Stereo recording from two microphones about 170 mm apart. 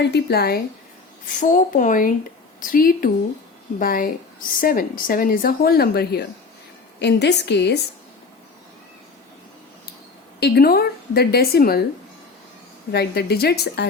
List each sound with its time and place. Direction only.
0.0 s a woman's voice: 75° left (ahead or behind)
1.3 s speech: 50° left (ahead or behind); by 6.2 s 70° left (ahead or behind)
7.0 s a woman's voice: 85° left
10.4 s speech: 65° left (ahead or behind)
12.9 s a woman's voice: 70° left (ahead or behind)